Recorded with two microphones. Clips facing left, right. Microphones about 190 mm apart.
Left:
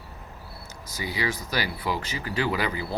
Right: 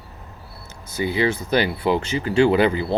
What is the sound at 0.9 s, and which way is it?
Speech, 25° right (ahead or behind).